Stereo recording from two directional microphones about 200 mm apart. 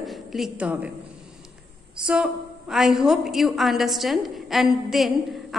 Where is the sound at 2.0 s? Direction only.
5° right (ahead or behind).